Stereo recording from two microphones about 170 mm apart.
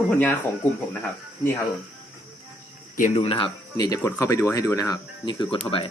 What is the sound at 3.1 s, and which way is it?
Speech, 35° left (ahead or behind).